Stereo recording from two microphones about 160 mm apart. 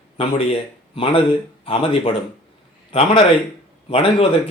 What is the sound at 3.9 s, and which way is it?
Speech, 35° left (ahead or behind).